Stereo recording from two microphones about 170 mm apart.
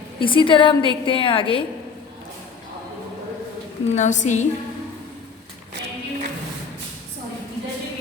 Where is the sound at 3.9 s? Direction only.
45° left (ahead or behind).